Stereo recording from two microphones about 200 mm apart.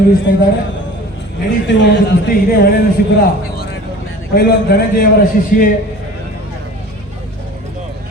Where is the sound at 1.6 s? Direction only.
65° left (ahead or behind).